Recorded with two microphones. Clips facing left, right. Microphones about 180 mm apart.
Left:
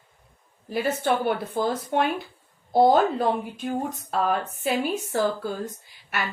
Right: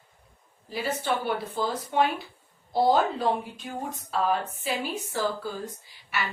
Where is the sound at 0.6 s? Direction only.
55° left (ahead or behind).